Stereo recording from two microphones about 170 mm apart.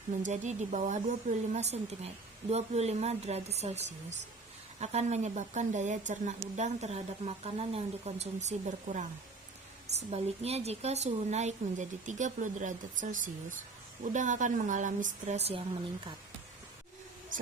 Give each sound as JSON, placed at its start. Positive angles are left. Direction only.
{"t": 0.2, "sound": "a woman's voice", "side_deg": -45}